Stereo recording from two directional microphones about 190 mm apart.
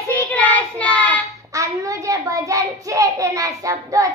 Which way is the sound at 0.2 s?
10° left (ahead or behind).